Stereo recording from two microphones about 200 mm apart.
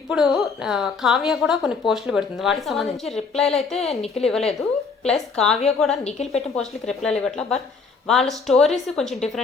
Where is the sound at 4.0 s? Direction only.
30° left (ahead or behind).